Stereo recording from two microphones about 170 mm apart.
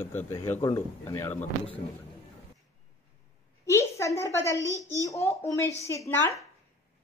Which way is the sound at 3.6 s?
15° left (ahead or behind).